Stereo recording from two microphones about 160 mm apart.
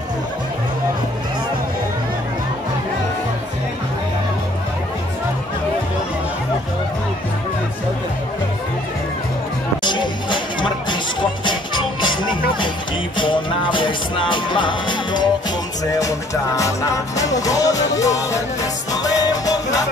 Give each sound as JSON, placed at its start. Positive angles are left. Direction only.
{"t": 9.8, "sound": "music", "side_deg": 30}